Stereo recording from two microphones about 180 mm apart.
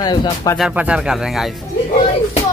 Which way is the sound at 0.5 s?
5° right (ahead or behind).